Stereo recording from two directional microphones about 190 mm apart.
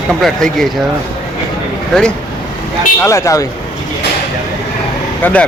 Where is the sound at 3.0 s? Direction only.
15° left (ahead or behind).